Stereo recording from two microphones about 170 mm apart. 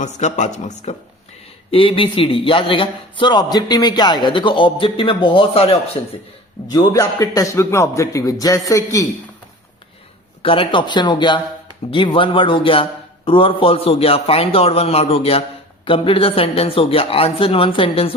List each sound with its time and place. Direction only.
0.0 s speech: 45° left (ahead or behind)
1.7 s a man's voice: 30° left (ahead or behind)
6.7 s a man's voice: 20° left (ahead or behind)
10.4 s a man's voice: 30° left (ahead or behind)